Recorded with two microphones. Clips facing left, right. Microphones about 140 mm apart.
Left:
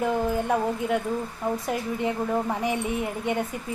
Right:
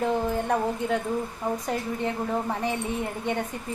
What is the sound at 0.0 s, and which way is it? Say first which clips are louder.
A woman's voice: left 1 dB; 10° left (ahead or behind).